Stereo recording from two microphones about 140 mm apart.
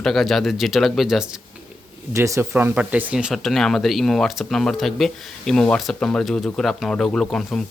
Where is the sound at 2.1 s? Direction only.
20° right (ahead or behind).